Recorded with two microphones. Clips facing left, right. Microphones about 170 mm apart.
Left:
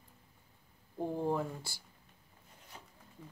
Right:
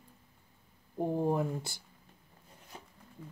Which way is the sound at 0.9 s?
15° right (ahead or behind).